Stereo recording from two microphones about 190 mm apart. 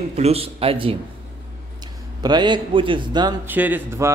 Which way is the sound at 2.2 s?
20° right (ahead or behind).